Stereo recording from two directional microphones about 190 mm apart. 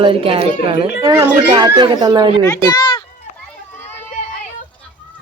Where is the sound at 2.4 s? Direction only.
20° left (ahead or behind).